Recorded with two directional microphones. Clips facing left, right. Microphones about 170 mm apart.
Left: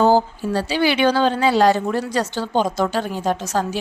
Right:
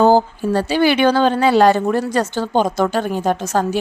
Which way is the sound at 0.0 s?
50° right (ahead or behind).